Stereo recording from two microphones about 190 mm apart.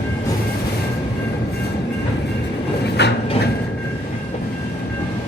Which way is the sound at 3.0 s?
60° left (ahead or behind).